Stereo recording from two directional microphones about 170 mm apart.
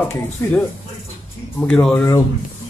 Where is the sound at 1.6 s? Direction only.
5° left (ahead or behind).